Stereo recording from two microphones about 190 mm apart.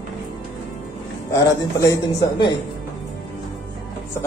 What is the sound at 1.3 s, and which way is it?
Speech, 15° left (ahead or behind).